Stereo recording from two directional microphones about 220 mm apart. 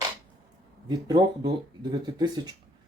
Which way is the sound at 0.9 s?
20° right (ahead or behind).